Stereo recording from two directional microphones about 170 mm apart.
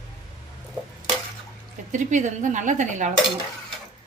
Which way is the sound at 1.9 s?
45° right (ahead or behind).